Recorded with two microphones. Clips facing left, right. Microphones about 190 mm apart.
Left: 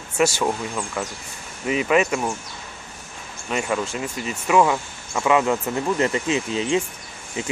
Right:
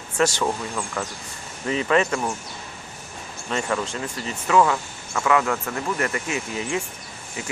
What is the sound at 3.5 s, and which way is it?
Speech, 10° left (ahead or behind).